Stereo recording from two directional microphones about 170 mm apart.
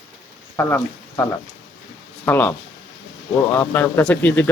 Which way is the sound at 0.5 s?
15° left (ahead or behind).